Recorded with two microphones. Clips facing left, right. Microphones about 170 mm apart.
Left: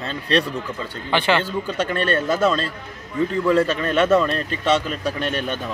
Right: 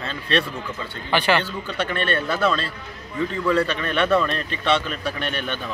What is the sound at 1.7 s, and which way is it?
Speech, 40° left (ahead or behind).